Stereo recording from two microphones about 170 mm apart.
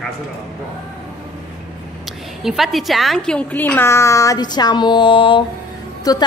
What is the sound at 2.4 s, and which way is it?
A woman's voice, centre (ahead or behind).